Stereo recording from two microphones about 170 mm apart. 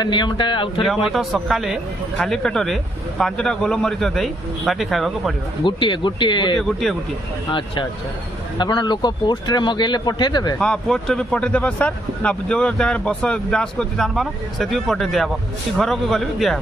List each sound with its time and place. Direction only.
0.0 s speech: 25° left (ahead or behind)
0.8 s speech: centre (ahead or behind)
5.6 s speech: 30° left (ahead or behind)
6.6 s speech: centre (ahead or behind)
8.5 s speech: 25° left (ahead or behind)
10.6 s speech: 5° left (ahead or behind)